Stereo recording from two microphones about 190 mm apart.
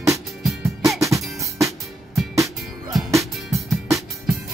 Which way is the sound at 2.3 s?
15° right (ahead or behind).